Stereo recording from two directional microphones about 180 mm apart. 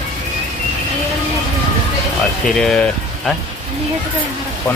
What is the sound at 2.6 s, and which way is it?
Speech, 5° left (ahead or behind).